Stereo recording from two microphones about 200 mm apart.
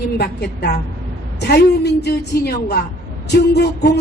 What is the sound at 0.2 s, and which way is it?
A woman's voice, 55° left (ahead or behind).